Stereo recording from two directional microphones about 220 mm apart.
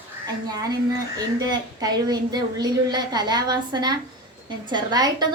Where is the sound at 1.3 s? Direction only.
15° right (ahead or behind).